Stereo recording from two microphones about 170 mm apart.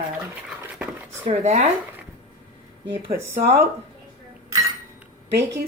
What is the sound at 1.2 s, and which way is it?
Speech, 40° right (ahead or behind).